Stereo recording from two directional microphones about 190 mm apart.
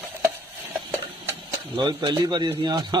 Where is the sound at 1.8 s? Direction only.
25° right (ahead or behind).